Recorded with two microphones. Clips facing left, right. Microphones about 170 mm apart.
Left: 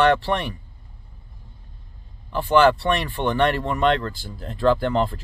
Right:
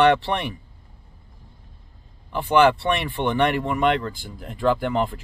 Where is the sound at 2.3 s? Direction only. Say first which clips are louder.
Left 1 dB; 15° right (ahead or behind).